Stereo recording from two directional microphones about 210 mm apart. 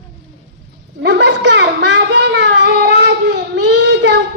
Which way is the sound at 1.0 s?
55° right (ahead or behind).